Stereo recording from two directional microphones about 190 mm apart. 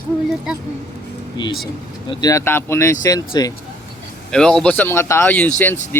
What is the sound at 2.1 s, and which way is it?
Speech, 20° left (ahead or behind).